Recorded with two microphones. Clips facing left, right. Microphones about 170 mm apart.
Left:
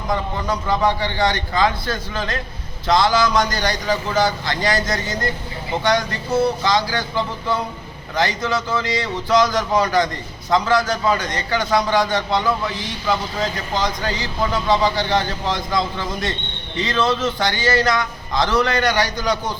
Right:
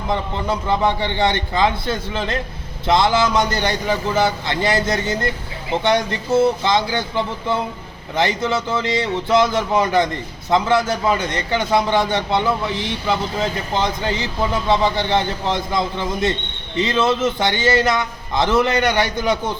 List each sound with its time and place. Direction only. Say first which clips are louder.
0.1 s a man's voice: right 1 dB; 25° right (ahead or behind)